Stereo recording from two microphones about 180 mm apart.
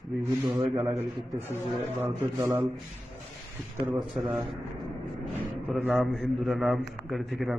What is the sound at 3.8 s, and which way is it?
Speech, 15° right (ahead or behind).